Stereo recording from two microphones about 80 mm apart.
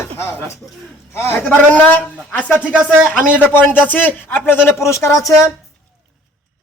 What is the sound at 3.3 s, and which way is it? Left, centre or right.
A man's voice, left.